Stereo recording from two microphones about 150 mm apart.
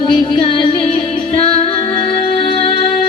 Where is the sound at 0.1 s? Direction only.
35° left (ahead or behind).